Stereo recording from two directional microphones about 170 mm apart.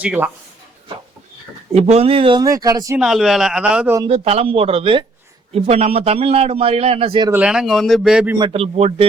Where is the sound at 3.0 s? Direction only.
Centre (ahead or behind).